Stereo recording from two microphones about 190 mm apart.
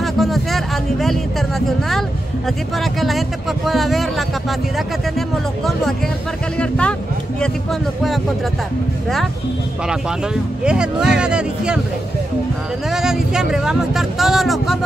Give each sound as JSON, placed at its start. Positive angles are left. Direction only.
{"t": 0.0, "sound": "speech", "side_deg": 0}
{"t": 6.6, "sound": "speech", "side_deg": 5}
{"t": 9.8, "sound": "speech", "side_deg": -5}
{"t": 12.9, "sound": "speech", "side_deg": -5}